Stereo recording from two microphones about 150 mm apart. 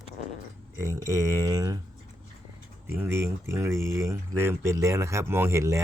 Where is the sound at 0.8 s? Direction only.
20° right (ahead or behind).